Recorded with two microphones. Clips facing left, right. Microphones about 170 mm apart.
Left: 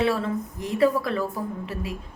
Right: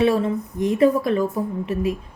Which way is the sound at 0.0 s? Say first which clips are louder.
Right 5 dB; 20° right (ahead or behind).